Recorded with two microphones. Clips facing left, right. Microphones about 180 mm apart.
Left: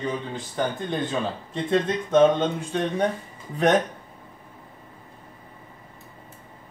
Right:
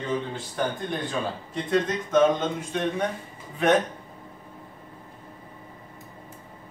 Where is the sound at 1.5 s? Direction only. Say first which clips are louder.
Left 2 dB; 30° left (ahead or behind).